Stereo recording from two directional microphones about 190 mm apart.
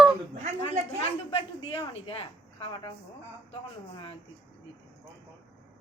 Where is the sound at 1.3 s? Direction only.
30° left (ahead or behind).